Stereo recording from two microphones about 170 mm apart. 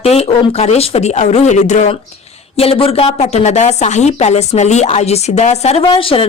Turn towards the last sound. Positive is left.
turn(degrees=30)  # may be behind; listen again after turning